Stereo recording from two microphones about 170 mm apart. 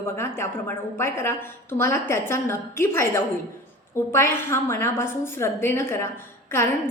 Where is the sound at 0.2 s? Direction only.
15° left (ahead or behind).